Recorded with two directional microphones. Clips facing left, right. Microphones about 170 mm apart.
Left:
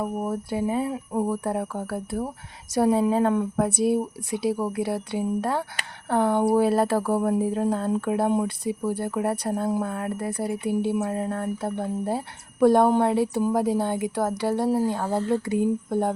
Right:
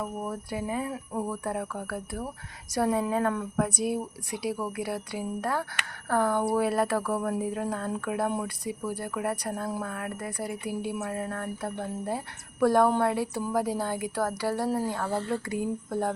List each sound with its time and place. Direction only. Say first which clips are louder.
0.0 s speech: left 6 dB; 25° left (ahead or behind)